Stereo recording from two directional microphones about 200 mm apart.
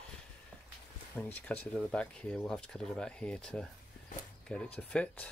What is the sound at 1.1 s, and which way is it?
Speech, 10° left (ahead or behind).